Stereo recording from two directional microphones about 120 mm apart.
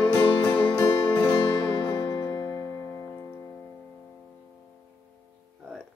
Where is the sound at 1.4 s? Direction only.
35° left (ahead or behind).